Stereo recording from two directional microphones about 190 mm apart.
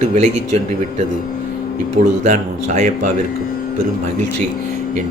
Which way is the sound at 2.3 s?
40° right (ahead or behind).